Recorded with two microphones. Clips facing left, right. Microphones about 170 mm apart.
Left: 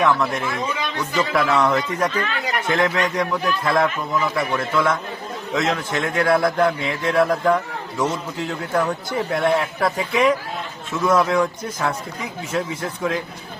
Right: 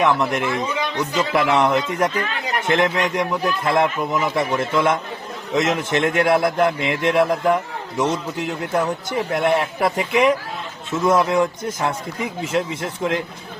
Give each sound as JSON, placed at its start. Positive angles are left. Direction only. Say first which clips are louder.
{"t": 0.0, "sound": "a man's voice", "louder": "right 1 dB", "side_deg": -25}